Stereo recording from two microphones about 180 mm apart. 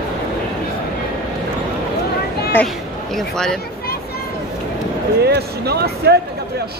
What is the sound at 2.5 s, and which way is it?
Speech, 5° left (ahead or behind).